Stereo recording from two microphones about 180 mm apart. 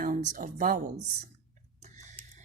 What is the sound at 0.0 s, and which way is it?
A woman's voice, 45° right (ahead or behind).